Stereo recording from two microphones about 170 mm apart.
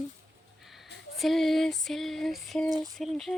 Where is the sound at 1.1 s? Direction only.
Centre (ahead or behind).